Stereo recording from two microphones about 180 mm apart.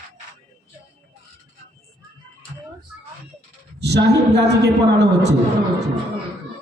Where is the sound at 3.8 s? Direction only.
70° right (ahead or behind).